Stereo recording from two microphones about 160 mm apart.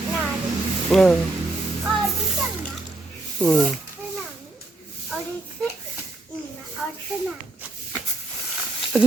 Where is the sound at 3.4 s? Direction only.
5° left (ahead or behind).